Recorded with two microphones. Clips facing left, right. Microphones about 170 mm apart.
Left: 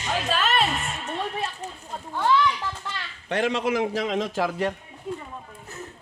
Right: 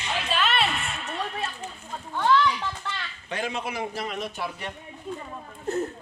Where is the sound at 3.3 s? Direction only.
85° left.